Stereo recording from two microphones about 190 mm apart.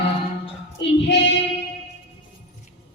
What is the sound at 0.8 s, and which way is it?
Female singing, 65° left (ahead or behind).